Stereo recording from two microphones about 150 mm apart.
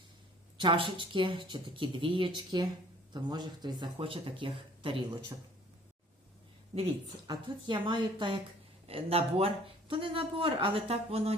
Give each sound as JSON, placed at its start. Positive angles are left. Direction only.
{"t": 0.5, "sound": "speech", "side_deg": -35}
{"t": 7.3, "sound": "speech", "side_deg": -35}